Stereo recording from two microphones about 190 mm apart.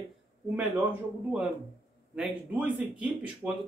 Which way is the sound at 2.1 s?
5° right (ahead or behind).